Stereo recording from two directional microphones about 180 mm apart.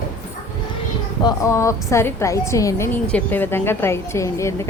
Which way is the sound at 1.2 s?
20° left (ahead or behind).